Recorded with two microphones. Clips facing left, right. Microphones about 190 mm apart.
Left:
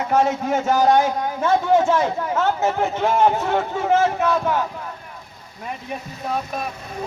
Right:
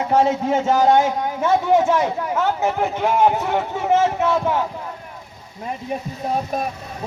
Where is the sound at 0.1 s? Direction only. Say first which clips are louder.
Right 2 dB; 30° right (ahead or behind).